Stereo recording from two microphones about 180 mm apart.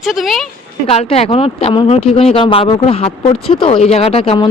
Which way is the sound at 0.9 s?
35° left (ahead or behind).